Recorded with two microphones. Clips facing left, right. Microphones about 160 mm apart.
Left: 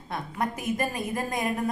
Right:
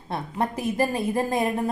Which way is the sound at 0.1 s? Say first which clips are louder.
Right 3 dB; 30° right (ahead or behind).